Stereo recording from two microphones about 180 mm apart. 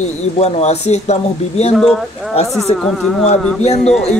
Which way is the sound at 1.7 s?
Centre (ahead or behind).